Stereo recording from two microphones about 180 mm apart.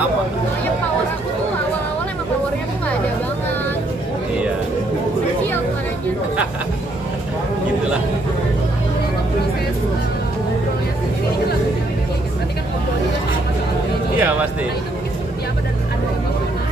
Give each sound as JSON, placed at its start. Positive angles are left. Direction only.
{"t": 14.1, "sound": "a man's voice", "side_deg": -10}